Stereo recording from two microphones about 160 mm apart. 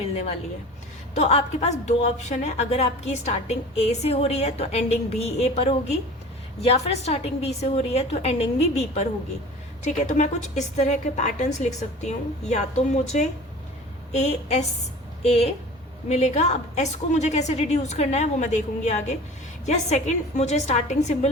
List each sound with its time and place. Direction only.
1.1 s a woman's voice: 45° left (ahead or behind)